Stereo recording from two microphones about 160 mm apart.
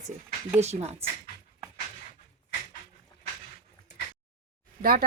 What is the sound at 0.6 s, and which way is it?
Speech, 45° right (ahead or behind).